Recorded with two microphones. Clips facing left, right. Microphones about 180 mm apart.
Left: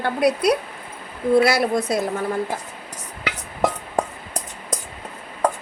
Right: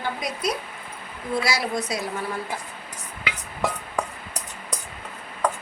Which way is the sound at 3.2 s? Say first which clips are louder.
Left 5 dB; 45° left (ahead or behind).